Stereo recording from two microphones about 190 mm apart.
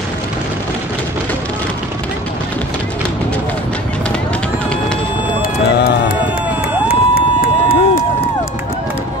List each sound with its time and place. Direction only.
5.4 s run: 55° left (ahead or behind)
6.9 s crowd: 50° left (ahead or behind)